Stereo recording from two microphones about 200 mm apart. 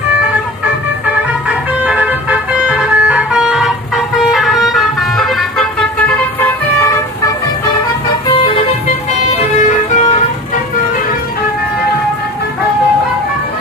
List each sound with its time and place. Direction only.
1.9 s vehicle: 5° right (ahead or behind)
9.4 s emergency vehicle: 35° left (ahead or behind)